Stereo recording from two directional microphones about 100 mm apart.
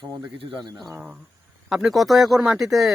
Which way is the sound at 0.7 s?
35° right (ahead or behind).